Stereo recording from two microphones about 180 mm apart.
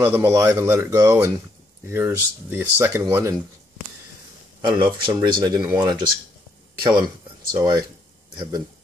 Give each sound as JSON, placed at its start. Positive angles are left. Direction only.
{"t": 0.0, "sound": "speech", "side_deg": -15}
{"t": 4.8, "sound": "speech", "side_deg": -25}